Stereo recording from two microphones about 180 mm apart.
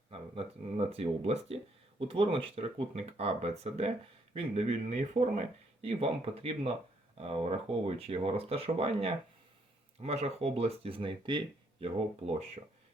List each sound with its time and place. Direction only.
0.1 s speech: 30° right (ahead or behind)